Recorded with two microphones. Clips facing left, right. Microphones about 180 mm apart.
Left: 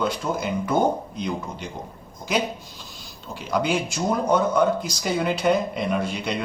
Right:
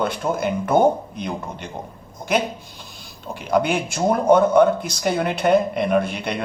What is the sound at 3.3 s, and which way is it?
Speech, 55° right (ahead or behind).